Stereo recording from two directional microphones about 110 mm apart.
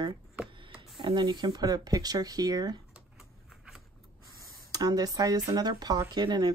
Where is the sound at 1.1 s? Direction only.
40° right (ahead or behind).